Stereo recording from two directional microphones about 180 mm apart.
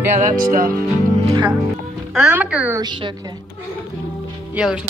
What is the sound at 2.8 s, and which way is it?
Speech, 25° right (ahead or behind).